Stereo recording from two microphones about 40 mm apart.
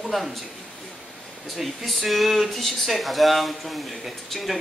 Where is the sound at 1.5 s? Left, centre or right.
Centre.